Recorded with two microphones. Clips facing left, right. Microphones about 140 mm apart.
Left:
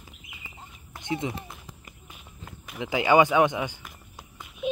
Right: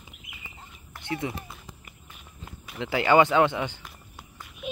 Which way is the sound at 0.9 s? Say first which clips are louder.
Left 1 dB; 20° left (ahead or behind).